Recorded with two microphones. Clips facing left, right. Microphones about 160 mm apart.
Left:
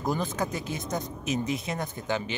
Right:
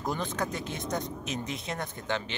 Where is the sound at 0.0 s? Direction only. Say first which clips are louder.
Left 3 dB; 5° left (ahead or behind).